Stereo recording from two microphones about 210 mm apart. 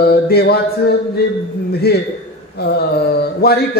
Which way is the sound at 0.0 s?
50° left (ahead or behind).